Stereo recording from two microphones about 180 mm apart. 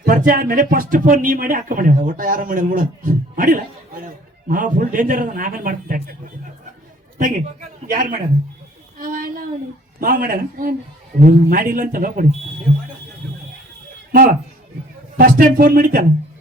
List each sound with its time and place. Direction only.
0.0 s speech: 50° right (ahead or behind)
7.2 s speech: 50° right (ahead or behind)
15.2 s speech: 50° right (ahead or behind)